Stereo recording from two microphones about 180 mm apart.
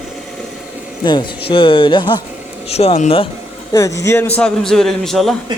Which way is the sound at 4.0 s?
15° left (ahead or behind).